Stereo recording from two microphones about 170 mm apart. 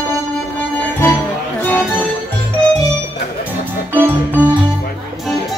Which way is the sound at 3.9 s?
10° right (ahead or behind).